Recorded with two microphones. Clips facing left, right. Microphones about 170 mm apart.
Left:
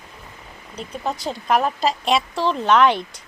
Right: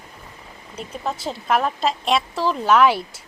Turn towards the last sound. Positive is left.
turn(degrees=-5)  # may be behind; listen again after turning